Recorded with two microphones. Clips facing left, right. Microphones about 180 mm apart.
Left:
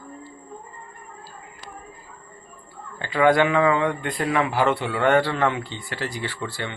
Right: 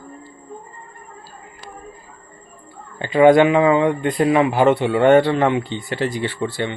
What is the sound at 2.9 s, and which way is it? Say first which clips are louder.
A man's voice: right 7 dB; 20° right (ahead or behind).